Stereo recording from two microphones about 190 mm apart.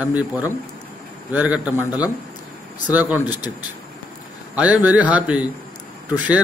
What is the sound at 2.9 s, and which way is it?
Speech, 10° right (ahead or behind).